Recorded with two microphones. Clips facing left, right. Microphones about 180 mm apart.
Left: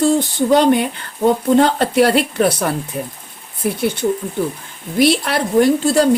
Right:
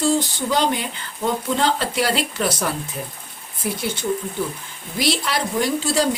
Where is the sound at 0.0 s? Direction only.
55° left (ahead or behind).